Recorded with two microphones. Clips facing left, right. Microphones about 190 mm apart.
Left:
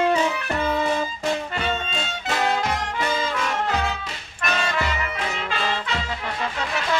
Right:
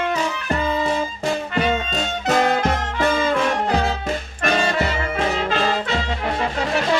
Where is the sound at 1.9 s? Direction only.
45° right (ahead or behind).